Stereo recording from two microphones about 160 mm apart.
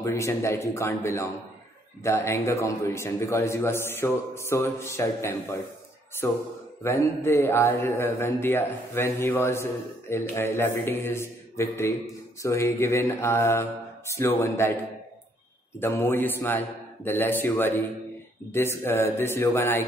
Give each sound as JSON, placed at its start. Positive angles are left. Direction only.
{"t": 0.0, "sound": "a man's voice", "side_deg": 20}
{"t": 15.8, "sound": "a man's voice", "side_deg": 15}